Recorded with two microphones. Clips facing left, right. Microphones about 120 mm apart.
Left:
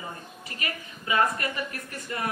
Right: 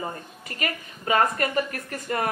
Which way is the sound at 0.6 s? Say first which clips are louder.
Right 5 dB; 50° right (ahead or behind).